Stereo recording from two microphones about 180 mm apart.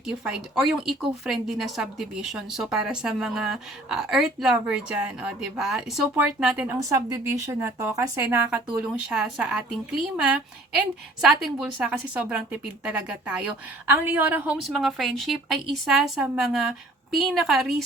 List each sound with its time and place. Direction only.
0.3 s a woman's voice: centre (ahead or behind)
6.7 s speech: 15° right (ahead or behind)
8.4 s a woman's voice: 5° right (ahead or behind)
11.2 s a woman's voice: centre (ahead or behind)